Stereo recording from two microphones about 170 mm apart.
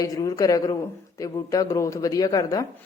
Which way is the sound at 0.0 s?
20° left (ahead or behind).